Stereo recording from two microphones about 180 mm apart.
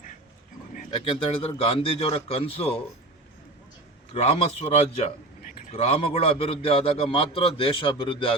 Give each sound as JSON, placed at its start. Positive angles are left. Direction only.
{"t": 0.9, "sound": "a man's voice", "side_deg": 30}
{"t": 4.1, "sound": "a man's voice", "side_deg": 35}